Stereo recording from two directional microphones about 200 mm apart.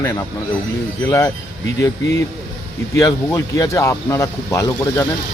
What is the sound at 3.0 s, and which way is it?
Speech, 15° left (ahead or behind).